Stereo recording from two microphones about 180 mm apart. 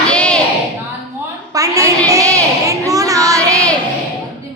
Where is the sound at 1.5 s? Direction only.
20° right (ahead or behind).